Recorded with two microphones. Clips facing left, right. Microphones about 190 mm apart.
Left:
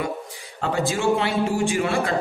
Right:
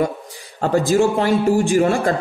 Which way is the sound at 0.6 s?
40° right (ahead or behind).